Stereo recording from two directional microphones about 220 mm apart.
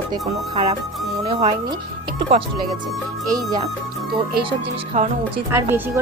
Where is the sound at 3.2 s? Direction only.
15° right (ahead or behind).